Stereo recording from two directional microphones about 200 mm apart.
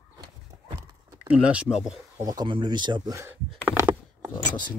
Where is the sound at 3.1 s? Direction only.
15° right (ahead or behind).